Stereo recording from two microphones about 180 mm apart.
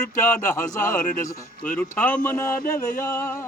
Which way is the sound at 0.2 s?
10° left (ahead or behind).